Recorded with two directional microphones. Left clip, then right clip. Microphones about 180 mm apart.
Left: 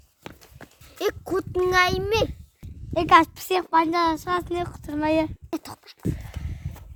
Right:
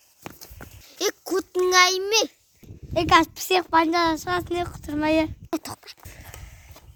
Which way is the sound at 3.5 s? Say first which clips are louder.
Right 1 dB; 15° right (ahead or behind).